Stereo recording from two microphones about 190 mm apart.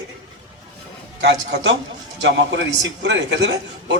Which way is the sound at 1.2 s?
65° right (ahead or behind).